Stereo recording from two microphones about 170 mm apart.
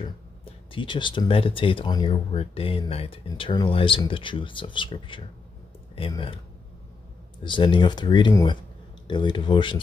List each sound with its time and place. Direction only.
0.0 s speech: 30° left (ahead or behind)
7.4 s speech: 25° left (ahead or behind)